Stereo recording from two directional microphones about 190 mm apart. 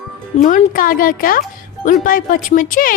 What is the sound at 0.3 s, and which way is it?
Speech, 40° left (ahead or behind).